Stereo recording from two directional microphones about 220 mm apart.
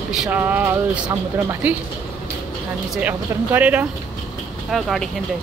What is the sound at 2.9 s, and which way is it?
Speech, 5° right (ahead or behind).